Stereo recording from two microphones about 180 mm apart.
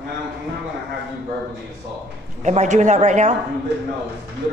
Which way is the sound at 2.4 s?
40° right (ahead or behind).